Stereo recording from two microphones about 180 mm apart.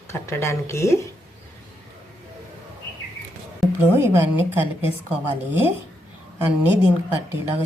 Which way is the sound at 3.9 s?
10° right (ahead or behind).